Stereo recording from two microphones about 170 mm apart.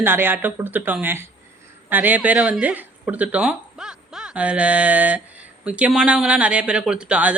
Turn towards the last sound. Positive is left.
turn(degrees=-5)  # may be behind; listen again after turning